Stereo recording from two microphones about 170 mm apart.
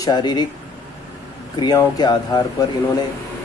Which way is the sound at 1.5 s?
20° left (ahead or behind).